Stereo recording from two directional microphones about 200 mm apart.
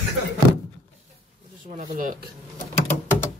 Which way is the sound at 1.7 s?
40° right (ahead or behind).